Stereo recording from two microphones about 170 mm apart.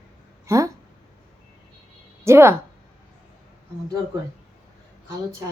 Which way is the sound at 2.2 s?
15° right (ahead or behind).